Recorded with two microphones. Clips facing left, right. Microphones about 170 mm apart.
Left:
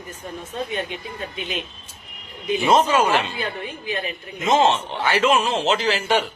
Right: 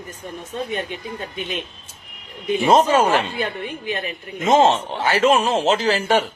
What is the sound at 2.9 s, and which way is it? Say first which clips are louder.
Speech: right 2 dB; 50° right (ahead or behind).